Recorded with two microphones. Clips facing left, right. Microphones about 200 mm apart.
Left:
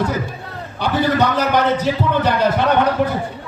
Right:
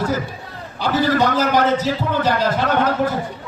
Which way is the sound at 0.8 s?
60° left (ahead or behind).